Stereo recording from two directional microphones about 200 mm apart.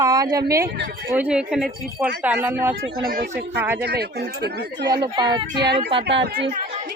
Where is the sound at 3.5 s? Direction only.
10° right (ahead or behind).